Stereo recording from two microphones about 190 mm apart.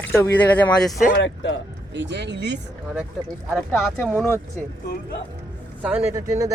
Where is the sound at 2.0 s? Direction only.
65° right (ahead or behind).